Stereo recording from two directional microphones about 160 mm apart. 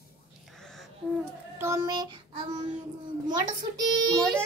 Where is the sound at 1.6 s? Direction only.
20° right (ahead or behind).